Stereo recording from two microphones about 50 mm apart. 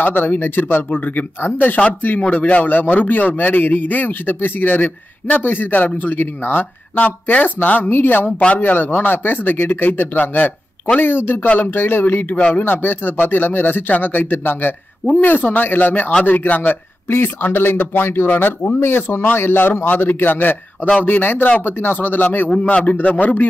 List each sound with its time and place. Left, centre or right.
0.0 s a man's voice: left
2.2 s a man's voice: left
8.3 s a man's voice: left
12.4 s speech: left
12.6 s a man's voice: left
17.1 s a man's voice: left
22.6 s a man's voice: left